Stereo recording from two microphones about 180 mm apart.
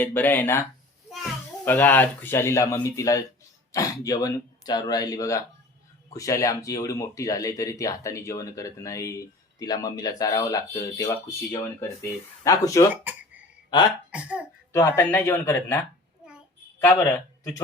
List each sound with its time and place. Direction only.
0.0 s speech: 10° left (ahead or behind)
1.6 s speech: 10° left (ahead or behind)
14.1 s speech: 5° right (ahead or behind)
14.7 s speech: 15° left (ahead or behind)
16.8 s a man's voice: 15° left (ahead or behind)